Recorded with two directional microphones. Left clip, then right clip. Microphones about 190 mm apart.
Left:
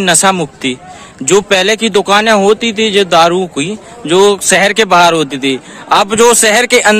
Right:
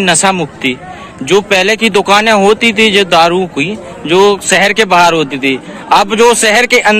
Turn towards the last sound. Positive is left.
turn(degrees=35)  # may be behind; listen again after turning